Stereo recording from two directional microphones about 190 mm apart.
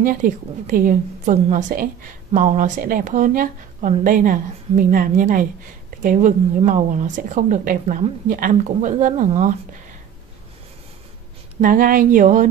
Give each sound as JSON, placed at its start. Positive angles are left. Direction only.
{"t": 0.2, "sound": "a woman's voice", "side_deg": -45}
{"t": 11.6, "sound": "a woman's voice", "side_deg": -45}